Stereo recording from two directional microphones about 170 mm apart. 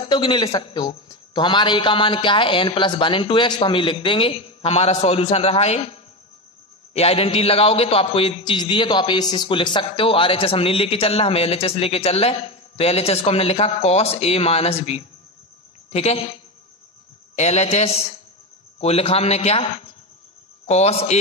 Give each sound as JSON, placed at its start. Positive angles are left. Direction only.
{"t": 0.0, "sound": "a man's voice", "side_deg": 30}
{"t": 17.4, "sound": "a man's voice", "side_deg": 40}